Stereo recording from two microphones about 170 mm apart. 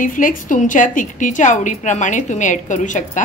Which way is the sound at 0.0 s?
50° left (ahead or behind).